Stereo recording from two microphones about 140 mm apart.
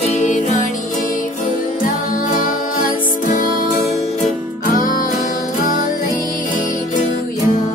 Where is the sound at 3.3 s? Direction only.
70° left (ahead or behind).